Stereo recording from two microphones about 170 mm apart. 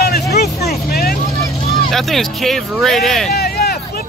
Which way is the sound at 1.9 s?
Centre (ahead or behind).